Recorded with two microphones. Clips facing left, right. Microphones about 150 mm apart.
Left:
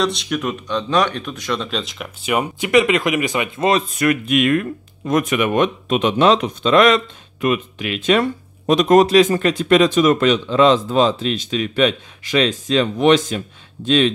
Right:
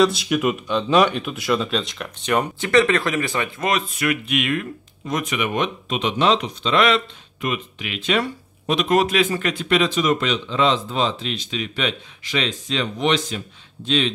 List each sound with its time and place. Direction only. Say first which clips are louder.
0.0 s speech: right 3 dB; 5° right (ahead or behind); by 3.6 s 15° left (ahead or behind)
3.6 s speech: left 6 dB; 35° left (ahead or behind)